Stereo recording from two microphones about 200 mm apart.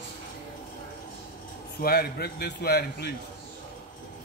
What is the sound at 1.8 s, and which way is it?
A man's voice, 50° left (ahead or behind).